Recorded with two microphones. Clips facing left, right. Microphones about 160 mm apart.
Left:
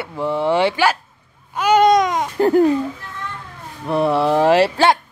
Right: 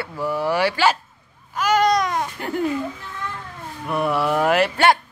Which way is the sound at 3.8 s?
30° left (ahead or behind).